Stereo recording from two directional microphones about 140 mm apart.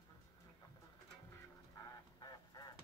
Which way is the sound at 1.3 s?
20° left (ahead or behind).